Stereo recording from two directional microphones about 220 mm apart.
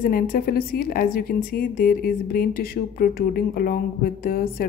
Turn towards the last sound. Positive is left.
turn(degrees=40)  # may be behind; listen again after turning